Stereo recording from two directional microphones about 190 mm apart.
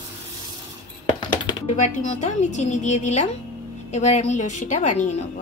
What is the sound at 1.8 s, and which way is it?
A woman's voice, 40° left (ahead or behind).